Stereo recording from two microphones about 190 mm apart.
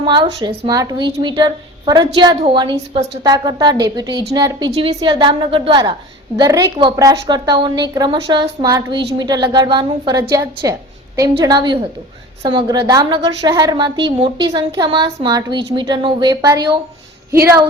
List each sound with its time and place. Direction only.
0.0 s a woman's voice: 25° right (ahead or behind)